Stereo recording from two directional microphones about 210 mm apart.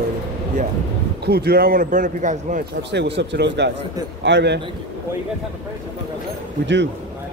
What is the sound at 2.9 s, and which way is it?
Speech, 55° right (ahead or behind).